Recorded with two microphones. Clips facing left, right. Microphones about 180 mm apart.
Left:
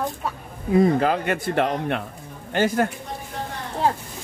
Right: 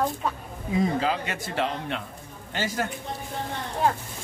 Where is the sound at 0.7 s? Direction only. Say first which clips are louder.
Left 7 dB; 55° left (ahead or behind).